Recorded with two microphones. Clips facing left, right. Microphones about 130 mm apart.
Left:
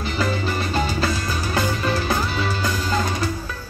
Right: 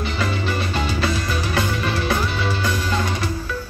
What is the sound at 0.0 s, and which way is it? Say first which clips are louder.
Music: left 1 dB; 35° left (ahead or behind).